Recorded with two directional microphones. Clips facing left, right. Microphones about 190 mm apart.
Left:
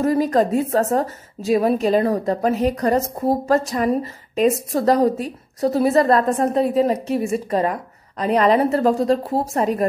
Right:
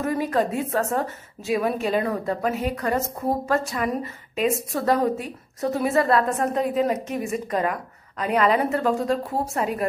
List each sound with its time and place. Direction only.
0.0 s a woman's voice: 35° left (ahead or behind)